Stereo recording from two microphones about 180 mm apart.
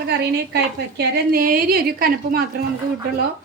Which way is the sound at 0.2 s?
65° right (ahead or behind).